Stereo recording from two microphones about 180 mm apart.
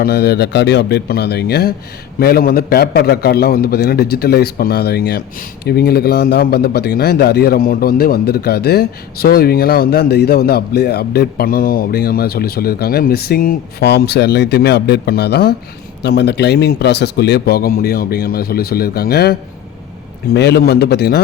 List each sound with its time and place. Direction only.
0.0 s a man's voice: 65° left (ahead or behind)